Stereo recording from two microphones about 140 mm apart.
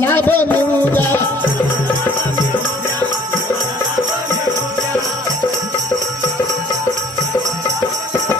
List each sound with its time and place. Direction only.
0.0 s music: 15° left (ahead or behind)